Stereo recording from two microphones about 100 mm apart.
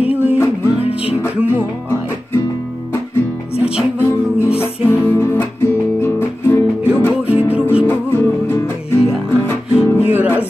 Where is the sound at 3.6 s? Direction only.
10° right (ahead or behind).